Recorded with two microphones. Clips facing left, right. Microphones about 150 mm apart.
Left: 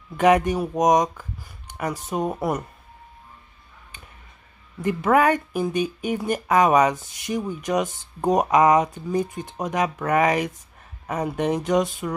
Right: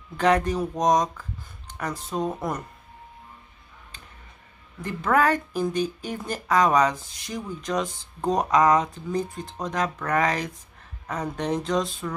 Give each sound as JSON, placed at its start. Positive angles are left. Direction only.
{"t": 0.2, "sound": "speech", "side_deg": 15}
{"t": 4.8, "sound": "speech", "side_deg": 15}